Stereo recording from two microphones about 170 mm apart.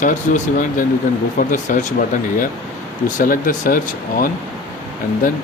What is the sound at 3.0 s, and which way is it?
Speech, 55° left (ahead or behind).